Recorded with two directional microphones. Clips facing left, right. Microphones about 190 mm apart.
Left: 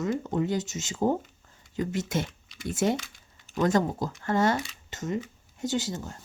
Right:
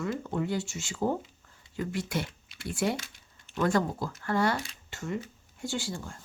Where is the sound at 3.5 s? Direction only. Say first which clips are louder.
Left 3 dB; 20° left (ahead or behind).